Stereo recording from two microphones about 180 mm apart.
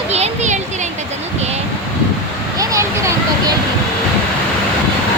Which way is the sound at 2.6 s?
15° right (ahead or behind).